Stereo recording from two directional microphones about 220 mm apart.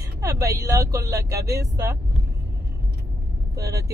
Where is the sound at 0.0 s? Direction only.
15° right (ahead or behind).